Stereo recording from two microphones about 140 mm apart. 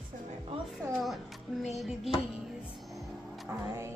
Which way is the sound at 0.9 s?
Centre (ahead or behind).